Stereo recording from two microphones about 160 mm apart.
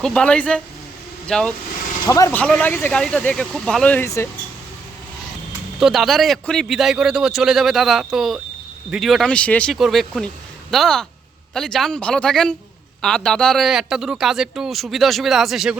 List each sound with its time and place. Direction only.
0.0 s a man's voice: 5° left (ahead or behind)
2.0 s speech: 20° left (ahead or behind)
2.4 s speech: 10° left (ahead or behind)
5.8 s a man's voice: centre (ahead or behind)